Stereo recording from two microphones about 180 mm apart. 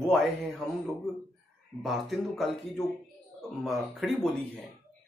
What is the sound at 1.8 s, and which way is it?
Speech, centre (ahead or behind).